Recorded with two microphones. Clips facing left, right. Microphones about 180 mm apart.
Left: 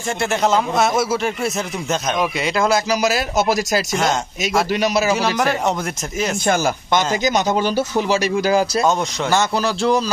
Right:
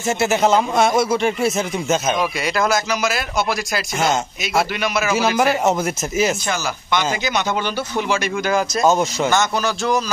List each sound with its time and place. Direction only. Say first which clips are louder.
0.2 s speech: right 1 dB; 5° right (ahead or behind)
2.4 s speech: left 3 dB; 25° left (ahead or behind); by 3.8 s 40° left (ahead or behind)
3.9 s speech: right 3 dB; 5° right (ahead or behind)
4.7 s speech: left 4 dB; 35° left (ahead or behind)
5.4 s speech: right 2 dB; 5° right (ahead or behind)
6.4 s speech: left 6 dB; 50° left (ahead or behind); by 8.8 s 30° left (ahead or behind)
8.8 s speech: right 2 dB; 5° right (ahead or behind)
9.3 s speech: left 1 dB; 30° left (ahead or behind)